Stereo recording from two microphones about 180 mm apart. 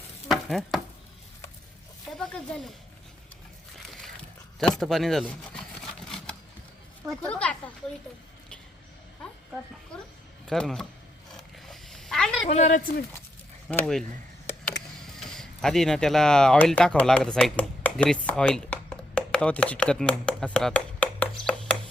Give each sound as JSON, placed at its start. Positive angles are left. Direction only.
{"t": 0.3, "sound": "stir", "side_deg": 0}
{"t": 2.1, "sound": "speech", "side_deg": 5}
{"t": 4.6, "sound": "speech", "side_deg": 0}
{"t": 7.1, "sound": "speech", "side_deg": 5}
{"t": 10.4, "sound": "speech", "side_deg": 5}
{"t": 11.3, "sound": "a sound", "side_deg": 0}
{"t": 12.5, "sound": "speech", "side_deg": 40}
{"t": 13.7, "sound": "speech", "side_deg": 5}
{"t": 15.2, "sound": "speech", "side_deg": 5}